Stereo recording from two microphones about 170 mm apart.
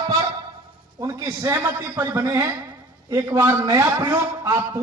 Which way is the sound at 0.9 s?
20° right (ahead or behind).